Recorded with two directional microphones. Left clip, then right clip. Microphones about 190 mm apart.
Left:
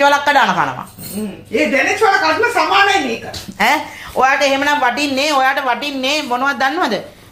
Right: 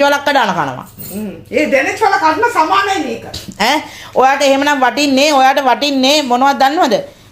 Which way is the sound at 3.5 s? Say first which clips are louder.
Right 1 dB; 25° right (ahead or behind).